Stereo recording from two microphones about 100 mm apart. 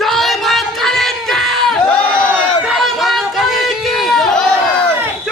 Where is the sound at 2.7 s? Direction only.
Centre (ahead or behind).